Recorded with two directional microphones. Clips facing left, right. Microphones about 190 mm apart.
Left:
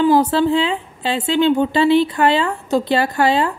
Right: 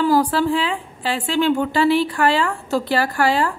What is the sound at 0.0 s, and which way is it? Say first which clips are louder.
A woman's voice: left 3 dB; 25° left (ahead or behind).